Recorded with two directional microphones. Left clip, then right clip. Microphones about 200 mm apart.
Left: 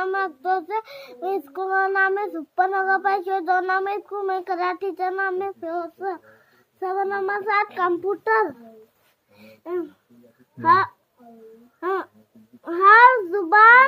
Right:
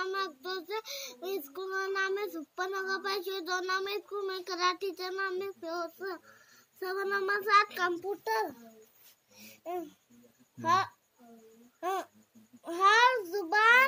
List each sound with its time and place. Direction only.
0.0 s a child's voice: 5° left (ahead or behind)
6.8 s child singing: 15° right (ahead or behind)
8.2 s a child's voice: 20° left (ahead or behind)
10.6 s a child's voice: 20° left (ahead or behind)